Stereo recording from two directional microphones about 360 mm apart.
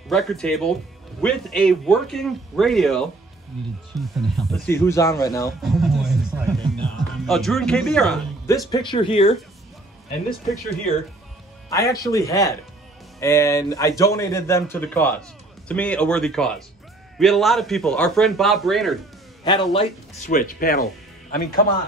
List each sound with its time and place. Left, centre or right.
0.1 s speech: centre
11.7 s a man's voice: centre
19.4 s speech: centre